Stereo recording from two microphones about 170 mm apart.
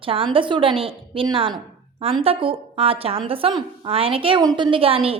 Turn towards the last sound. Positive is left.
turn(degrees=-35)  # may be behind; listen again after turning